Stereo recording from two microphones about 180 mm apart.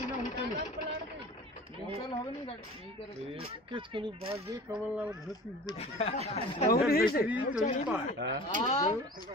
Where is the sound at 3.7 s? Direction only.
25° right (ahead or behind).